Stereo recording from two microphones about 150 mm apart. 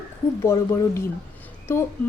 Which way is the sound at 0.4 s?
20° left (ahead or behind).